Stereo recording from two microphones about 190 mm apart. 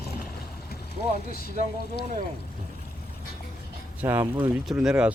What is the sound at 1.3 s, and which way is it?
Speech, 55° left (ahead or behind).